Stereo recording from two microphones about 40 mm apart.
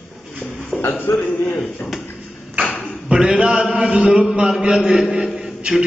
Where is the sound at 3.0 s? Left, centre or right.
Right.